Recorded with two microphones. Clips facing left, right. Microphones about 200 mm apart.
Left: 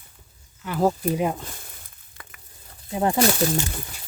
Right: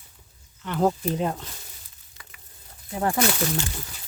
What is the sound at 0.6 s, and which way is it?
Speech, 5° left (ahead or behind).